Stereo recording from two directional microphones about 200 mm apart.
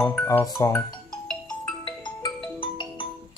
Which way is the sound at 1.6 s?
20° left (ahead or behind).